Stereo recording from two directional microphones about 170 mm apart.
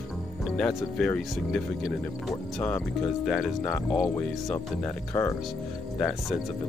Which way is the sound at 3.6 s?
15° left (ahead or behind).